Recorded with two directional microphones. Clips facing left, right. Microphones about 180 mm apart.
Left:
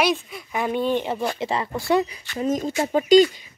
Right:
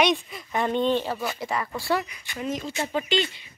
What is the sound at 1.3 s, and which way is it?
Speech, 25° left (ahead or behind).